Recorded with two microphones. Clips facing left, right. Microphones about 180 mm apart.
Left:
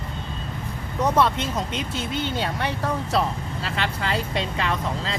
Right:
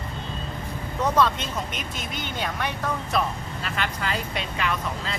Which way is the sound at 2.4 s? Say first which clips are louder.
Left 2 dB; 30° left (ahead or behind).